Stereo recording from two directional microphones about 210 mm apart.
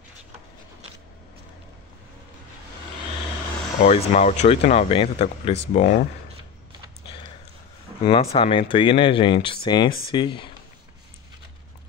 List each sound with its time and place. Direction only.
3.8 s speech: 35° left (ahead or behind)
8.0 s speech: 30° left (ahead or behind)